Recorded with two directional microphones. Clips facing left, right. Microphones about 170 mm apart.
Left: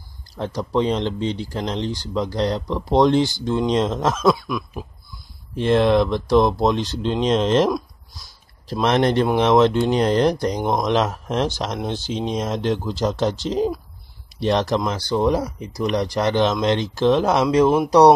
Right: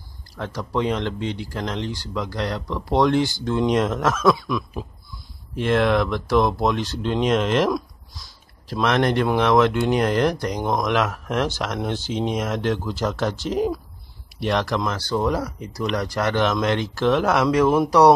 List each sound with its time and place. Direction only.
0.4 s speech: 25° left (ahead or behind)
5.6 s speech: 20° left (ahead or behind)
8.8 s speech: 30° left (ahead or behind)
14.4 s speech: 25° left (ahead or behind)